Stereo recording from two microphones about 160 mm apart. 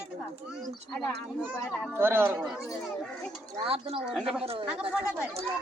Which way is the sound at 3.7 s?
35° right (ahead or behind).